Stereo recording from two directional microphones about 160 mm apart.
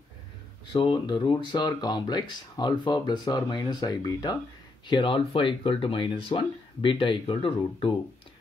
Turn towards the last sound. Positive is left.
turn(degrees=35)  # may be behind; listen again after turning